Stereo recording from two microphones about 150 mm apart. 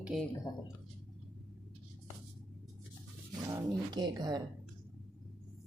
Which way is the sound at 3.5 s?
30° right (ahead or behind).